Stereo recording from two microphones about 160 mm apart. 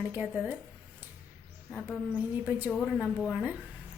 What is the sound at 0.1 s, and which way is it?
Speech, 10° right (ahead or behind).